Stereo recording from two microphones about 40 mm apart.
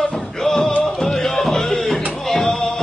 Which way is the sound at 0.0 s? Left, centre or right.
Centre.